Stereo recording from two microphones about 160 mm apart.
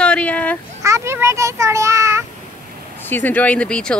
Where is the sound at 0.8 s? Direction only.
15° right (ahead or behind).